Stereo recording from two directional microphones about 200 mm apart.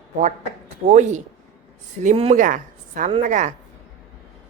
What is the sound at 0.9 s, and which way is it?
A woman's voice, 35° right (ahead or behind).